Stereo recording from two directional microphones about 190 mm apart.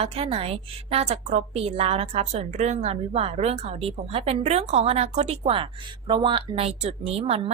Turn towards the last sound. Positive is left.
turn(degrees=-35)  # may be behind; listen again after turning